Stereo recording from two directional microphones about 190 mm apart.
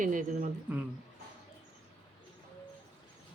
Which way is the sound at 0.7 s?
5° right (ahead or behind).